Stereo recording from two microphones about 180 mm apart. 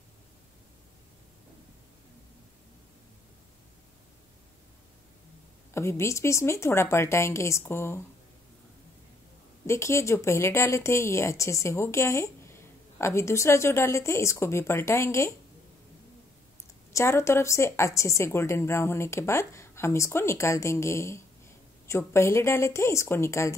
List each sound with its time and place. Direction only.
5.8 s a woman's voice: 15° left (ahead or behind)
9.7 s a woman's voice: 15° left (ahead or behind)
16.9 s a woman's voice: 15° left (ahead or behind)